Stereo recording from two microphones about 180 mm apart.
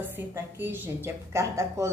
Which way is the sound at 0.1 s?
10° right (ahead or behind).